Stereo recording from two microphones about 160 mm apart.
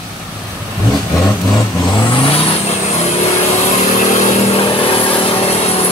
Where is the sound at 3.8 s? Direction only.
50° left (ahead or behind).